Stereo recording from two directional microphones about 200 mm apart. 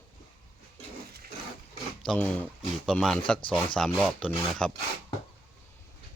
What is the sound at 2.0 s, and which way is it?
Speech, 5° left (ahead or behind).